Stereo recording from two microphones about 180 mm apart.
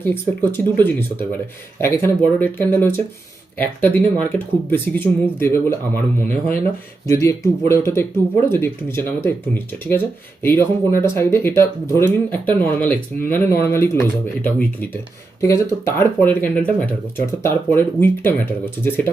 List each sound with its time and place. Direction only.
0.0 s speech: 10° left (ahead or behind)
7.1 s speech: 15° left (ahead or behind)